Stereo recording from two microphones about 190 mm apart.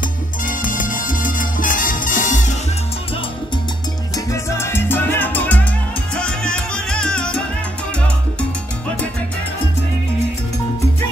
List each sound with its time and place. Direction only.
0.5 s salsa music: 45° left (ahead or behind)
4.3 s salsa music: 15° left (ahead or behind)